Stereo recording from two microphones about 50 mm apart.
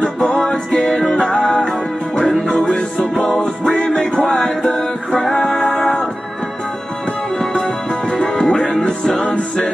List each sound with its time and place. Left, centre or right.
0.3 s music: centre
3.2 s music: centre
7.3 s music: centre